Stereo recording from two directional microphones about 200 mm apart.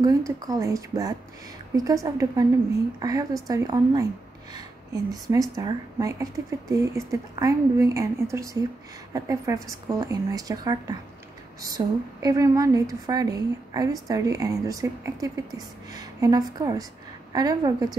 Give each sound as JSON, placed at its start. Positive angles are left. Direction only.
{"t": 0.0, "sound": "a woman's voice", "side_deg": -15}
{"t": 5.1, "sound": "a woman's voice", "side_deg": -20}